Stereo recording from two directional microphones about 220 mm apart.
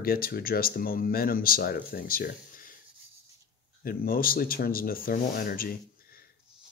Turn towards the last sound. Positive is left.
turn(degrees=40)  # may be behind; listen again after turning